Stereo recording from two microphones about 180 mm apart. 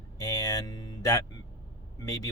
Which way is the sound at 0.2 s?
20° left (ahead or behind).